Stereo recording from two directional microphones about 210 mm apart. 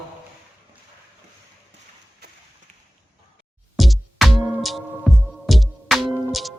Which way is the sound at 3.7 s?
Centre (ahead or behind).